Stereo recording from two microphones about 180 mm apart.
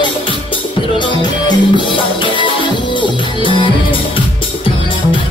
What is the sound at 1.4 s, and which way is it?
Music, 25° left (ahead or behind).